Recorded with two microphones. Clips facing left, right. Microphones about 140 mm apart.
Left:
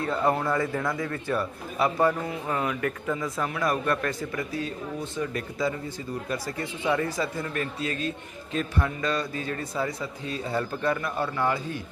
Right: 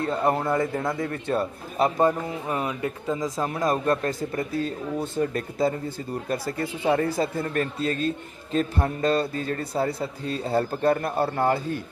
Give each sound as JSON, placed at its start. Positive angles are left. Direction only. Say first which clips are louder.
{"t": 0.1, "sound": "a man's voice", "louder": "right 1 dB", "side_deg": -25}
{"t": 3.2, "sound": "a man's voice", "louder": "right 2 dB", "side_deg": -40}
{"t": 3.6, "sound": "a man's voice", "louder": "right 3 dB", "side_deg": -25}
{"t": 6.6, "sound": "a man's voice", "louder": "right 3 dB", "side_deg": -35}